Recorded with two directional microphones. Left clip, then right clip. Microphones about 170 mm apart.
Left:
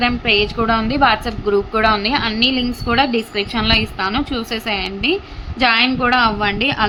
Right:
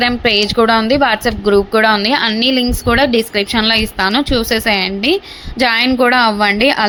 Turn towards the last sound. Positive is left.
turn(degrees=-30)  # may be behind; listen again after turning